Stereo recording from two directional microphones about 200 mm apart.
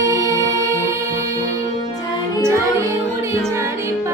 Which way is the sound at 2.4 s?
15° right (ahead or behind).